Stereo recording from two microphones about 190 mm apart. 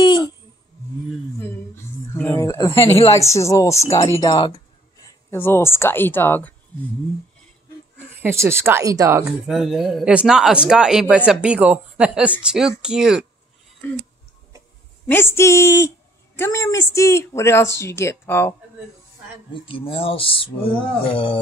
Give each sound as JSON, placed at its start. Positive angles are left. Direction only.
{"t": 0.0, "sound": "a sound", "side_deg": 25}
{"t": 2.1, "sound": "speech", "side_deg": 10}
{"t": 5.3, "sound": "speech", "side_deg": 15}
{"t": 8.2, "sound": "speech", "side_deg": -15}
{"t": 9.2, "sound": "speech", "side_deg": 0}
{"t": 13.8, "sound": "speech", "side_deg": 10}
{"t": 15.0, "sound": "speech", "side_deg": 10}
{"t": 19.7, "sound": "speech", "side_deg": 30}